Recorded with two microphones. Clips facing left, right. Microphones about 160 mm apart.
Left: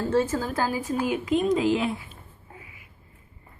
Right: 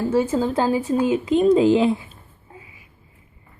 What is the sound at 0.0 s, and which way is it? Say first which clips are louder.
Speech: right 3 dB; 15° right (ahead or behind).